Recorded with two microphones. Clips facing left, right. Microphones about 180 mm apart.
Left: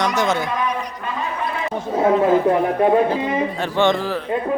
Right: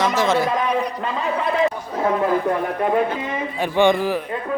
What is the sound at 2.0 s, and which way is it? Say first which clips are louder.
Speech: left 4 dB; 25° left (ahead or behind).